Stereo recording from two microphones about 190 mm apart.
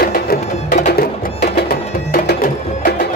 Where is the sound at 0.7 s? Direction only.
35° left (ahead or behind).